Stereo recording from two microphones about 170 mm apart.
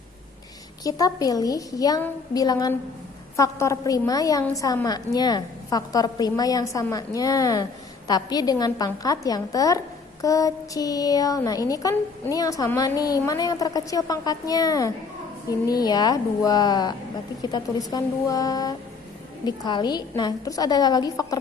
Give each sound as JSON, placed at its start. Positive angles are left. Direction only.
{"t": 0.9, "sound": "a woman's voice", "side_deg": 20}